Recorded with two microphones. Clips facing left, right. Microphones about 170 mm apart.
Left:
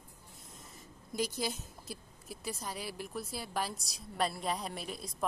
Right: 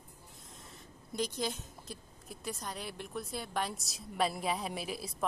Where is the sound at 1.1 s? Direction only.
5° left (ahead or behind).